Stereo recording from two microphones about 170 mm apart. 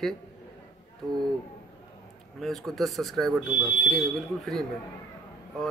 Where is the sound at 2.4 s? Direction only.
Centre (ahead or behind).